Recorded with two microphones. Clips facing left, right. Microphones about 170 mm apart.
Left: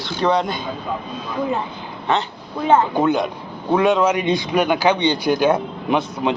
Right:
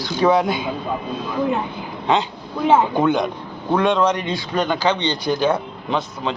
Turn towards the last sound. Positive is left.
turn(degrees=15)  # may be behind; listen again after turning